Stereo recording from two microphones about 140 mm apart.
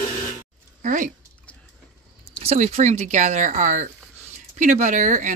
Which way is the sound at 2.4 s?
45° right (ahead or behind).